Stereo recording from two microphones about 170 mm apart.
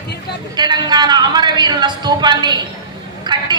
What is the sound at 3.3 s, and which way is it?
Vehicle, 25° right (ahead or behind).